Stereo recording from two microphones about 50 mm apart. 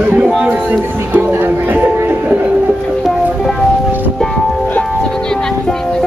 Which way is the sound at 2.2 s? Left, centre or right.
Right.